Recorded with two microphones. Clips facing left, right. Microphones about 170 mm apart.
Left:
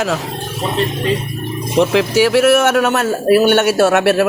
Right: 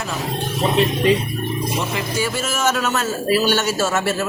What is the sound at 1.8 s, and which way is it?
A man's voice, 90° left.